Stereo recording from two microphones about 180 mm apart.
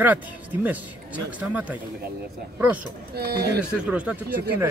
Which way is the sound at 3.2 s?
60° right (ahead or behind).